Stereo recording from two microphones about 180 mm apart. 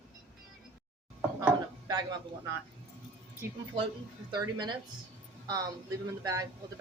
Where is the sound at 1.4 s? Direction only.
20° right (ahead or behind).